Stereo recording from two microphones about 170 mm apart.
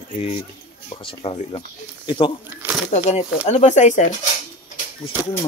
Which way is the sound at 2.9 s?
40° left (ahead or behind).